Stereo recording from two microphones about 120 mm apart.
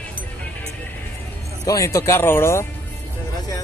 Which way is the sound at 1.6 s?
30° left (ahead or behind).